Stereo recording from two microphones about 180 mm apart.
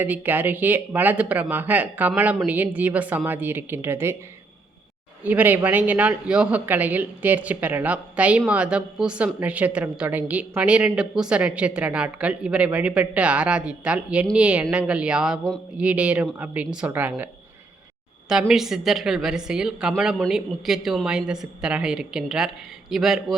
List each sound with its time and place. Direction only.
0.0 s speech: 10° right (ahead or behind)
5.2 s a woman's voice: 10° right (ahead or behind)
18.3 s a woman's voice: 5° right (ahead or behind)